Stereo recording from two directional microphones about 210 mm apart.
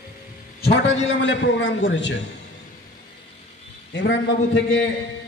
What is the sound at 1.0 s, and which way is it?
A man's voice, 60° left (ahead or behind).